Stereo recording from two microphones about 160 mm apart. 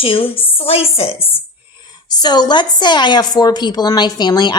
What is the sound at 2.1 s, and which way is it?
A woman's voice, 25° left (ahead or behind).